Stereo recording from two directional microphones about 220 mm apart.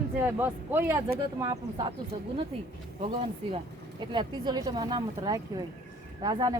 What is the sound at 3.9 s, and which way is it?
Speech, 20° right (ahead or behind).